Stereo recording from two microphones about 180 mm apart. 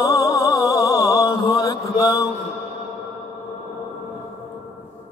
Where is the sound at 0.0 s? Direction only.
20° left (ahead or behind).